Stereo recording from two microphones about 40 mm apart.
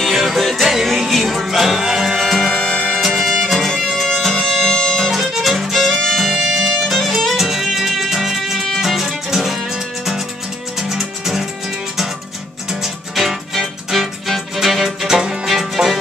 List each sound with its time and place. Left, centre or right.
0.0 s music: centre
2.5 s music: left
3.0 s music: centre
5.1 s music: centre
5.8 s music: centre
6.1 s violin: centre
7.3 s music: centre
12.8 s music: centre